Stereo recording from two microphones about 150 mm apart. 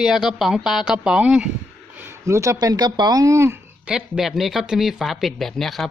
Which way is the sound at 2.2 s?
20° right (ahead or behind).